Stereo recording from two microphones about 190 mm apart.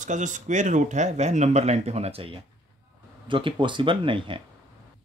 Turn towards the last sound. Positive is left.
turn(degrees=-25)  # may be behind; listen again after turning